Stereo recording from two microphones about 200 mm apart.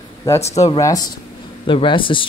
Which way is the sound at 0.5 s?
15° left (ahead or behind).